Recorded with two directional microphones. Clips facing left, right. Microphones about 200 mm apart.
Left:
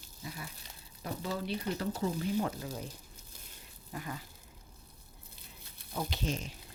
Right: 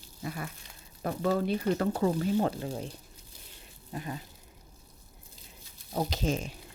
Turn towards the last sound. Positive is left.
turn(degrees=-45)  # may be behind; listen again after turning